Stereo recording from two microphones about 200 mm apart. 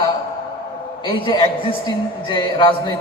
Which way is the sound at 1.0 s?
25° left (ahead or behind).